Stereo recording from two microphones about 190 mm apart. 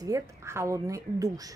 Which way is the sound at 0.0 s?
15° right (ahead or behind).